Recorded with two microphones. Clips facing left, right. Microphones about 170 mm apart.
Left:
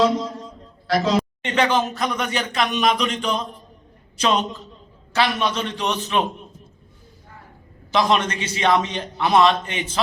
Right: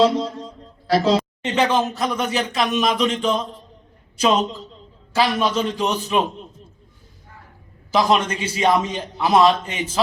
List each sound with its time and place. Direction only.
0.0 s a sound: 30° right (ahead or behind)
1.5 s a man's voice: centre (ahead or behind)
7.9 s a man's voice: 5° right (ahead or behind)